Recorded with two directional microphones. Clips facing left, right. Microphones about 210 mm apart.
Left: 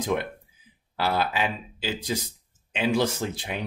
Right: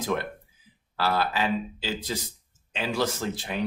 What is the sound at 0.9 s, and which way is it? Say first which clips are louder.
Speech: even; 15° left (ahead or behind).